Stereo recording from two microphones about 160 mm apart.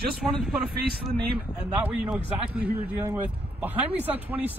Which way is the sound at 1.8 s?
10° right (ahead or behind).